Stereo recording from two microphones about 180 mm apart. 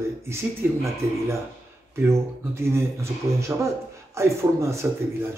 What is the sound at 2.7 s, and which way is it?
Speech, 15° right (ahead or behind).